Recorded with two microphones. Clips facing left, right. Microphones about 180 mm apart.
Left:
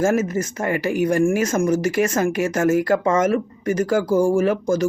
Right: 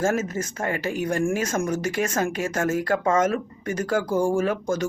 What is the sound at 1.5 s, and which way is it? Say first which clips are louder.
Speech: left 6 dB; 40° left (ahead or behind).